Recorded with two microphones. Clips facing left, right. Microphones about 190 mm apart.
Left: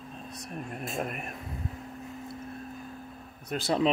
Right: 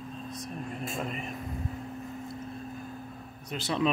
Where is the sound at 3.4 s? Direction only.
45° left (ahead or behind).